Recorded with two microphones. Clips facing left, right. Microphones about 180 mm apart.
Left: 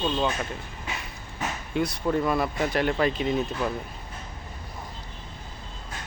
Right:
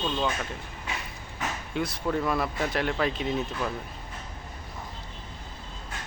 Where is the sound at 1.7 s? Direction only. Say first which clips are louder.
Left 4 dB; centre (ahead or behind).